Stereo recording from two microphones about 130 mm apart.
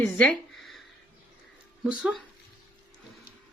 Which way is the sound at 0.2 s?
5° left (ahead or behind).